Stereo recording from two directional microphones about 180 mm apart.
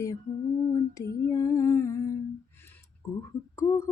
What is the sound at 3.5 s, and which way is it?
Lullaby, 15° left (ahead or behind).